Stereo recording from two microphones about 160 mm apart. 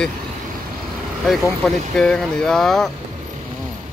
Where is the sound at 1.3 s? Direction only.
Centre (ahead or behind).